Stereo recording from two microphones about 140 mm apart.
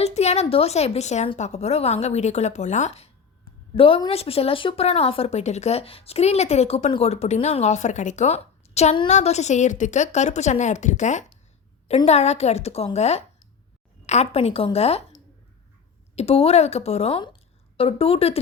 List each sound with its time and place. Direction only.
0.0 s speech: 50° left (ahead or behind)
3.8 s a woman's voice: 40° left (ahead or behind)